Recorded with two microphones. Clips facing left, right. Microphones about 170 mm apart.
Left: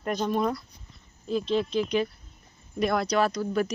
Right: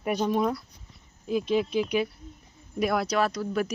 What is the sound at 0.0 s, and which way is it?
Speech, 10° right (ahead or behind).